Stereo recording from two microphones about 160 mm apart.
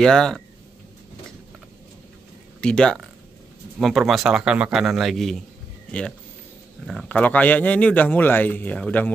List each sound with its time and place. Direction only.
0.0 s a man's voice: 5° left (ahead or behind)
2.6 s a man's voice: 5° left (ahead or behind)